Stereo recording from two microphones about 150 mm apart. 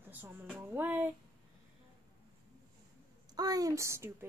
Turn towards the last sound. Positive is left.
turn(degrees=-15)  # may be behind; listen again after turning